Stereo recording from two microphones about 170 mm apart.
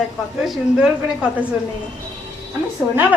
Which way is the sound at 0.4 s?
Centre (ahead or behind).